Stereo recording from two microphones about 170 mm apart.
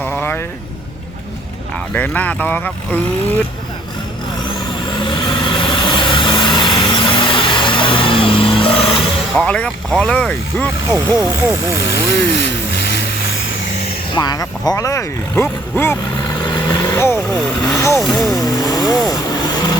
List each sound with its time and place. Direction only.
0.0 s vehicle: 10° left (ahead or behind)
1.9 s speech: 10° left (ahead or behind)
5.0 s vehicle: 30° left (ahead or behind)
9.3 s speech: 5° left (ahead or behind)
11.2 s speech: 20° right (ahead or behind)
11.9 s speech: 90° left
14.2 s speech: 25° left (ahead or behind)
16.4 s vehicle: 25° left (ahead or behind)
17.6 s speech: 20° left (ahead or behind)
18.0 s speech: centre (ahead or behind)
18.5 s vehicle: 20° left (ahead or behind)